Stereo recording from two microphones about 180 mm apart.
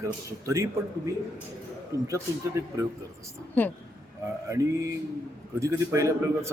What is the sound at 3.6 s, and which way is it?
Speech, 10° left (ahead or behind).